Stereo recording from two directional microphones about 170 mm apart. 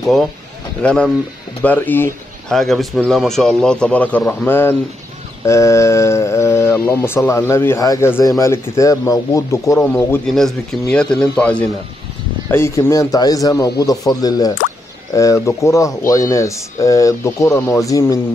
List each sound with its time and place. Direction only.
0.0 s speech: centre (ahead or behind)
2.5 s speech: centre (ahead or behind)
10.2 s speech: centre (ahead or behind); by 18.2 s 20° left (ahead or behind)